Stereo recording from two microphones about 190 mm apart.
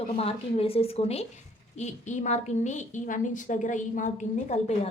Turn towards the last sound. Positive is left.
turn(degrees=35)  # may be behind; listen again after turning